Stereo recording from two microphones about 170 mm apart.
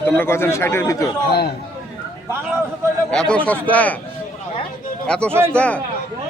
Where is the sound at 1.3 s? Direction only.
70° left (ahead or behind).